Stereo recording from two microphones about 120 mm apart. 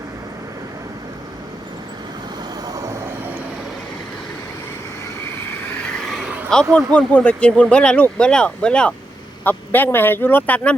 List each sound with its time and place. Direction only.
2.6 s vehicle: 30° right (ahead or behind)
6.1 s a sound: centre (ahead or behind)
6.5 s speech: 5° left (ahead or behind)